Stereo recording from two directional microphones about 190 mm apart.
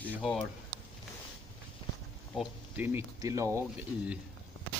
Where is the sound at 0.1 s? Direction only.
Centre (ahead or behind).